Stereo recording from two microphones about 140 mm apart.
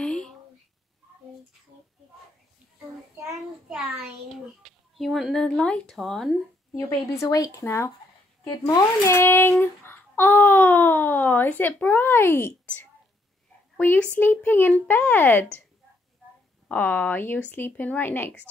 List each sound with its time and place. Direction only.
0.0 s a sound: 5° left (ahead or behind)
3.3 s speech: 5° right (ahead or behind)
6.9 s a child's voice: 25° left (ahead or behind)
13.7 s a child's voice: 15° left (ahead or behind)
16.6 s a child's voice: 10° left (ahead or behind)